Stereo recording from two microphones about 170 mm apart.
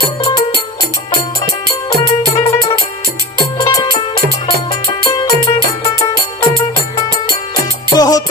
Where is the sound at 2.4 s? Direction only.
20° left (ahead or behind).